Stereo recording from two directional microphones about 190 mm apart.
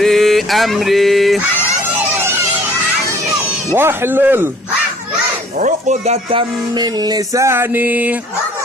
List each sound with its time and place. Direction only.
0.0 s a sound: centre (ahead or behind)
3.7 s music: 10° right (ahead or behind)
5.5 s speech: 40° right (ahead or behind)
6.7 s music: 20° right (ahead or behind)